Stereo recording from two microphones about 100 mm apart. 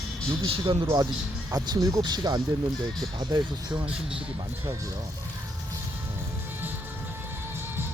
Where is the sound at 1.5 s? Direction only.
35° right (ahead or behind).